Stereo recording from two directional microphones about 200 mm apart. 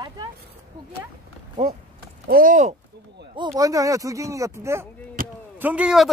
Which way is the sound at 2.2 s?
45° right (ahead or behind).